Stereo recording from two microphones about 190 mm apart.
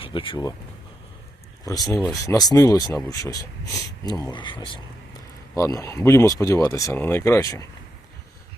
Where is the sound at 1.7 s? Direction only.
20° left (ahead or behind).